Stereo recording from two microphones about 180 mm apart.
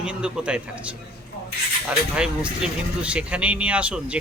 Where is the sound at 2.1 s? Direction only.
5° right (ahead or behind).